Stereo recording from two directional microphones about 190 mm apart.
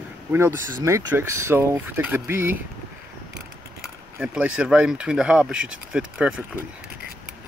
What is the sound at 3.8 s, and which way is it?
Speech, 5° right (ahead or behind).